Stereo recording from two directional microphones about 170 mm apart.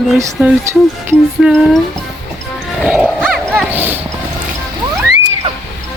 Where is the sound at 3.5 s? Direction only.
10° right (ahead or behind).